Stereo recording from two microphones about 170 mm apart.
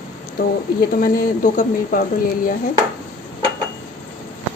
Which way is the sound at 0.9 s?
55° left (ahead or behind).